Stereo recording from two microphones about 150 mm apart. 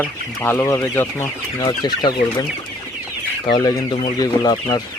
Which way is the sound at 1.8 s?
30° left (ahead or behind).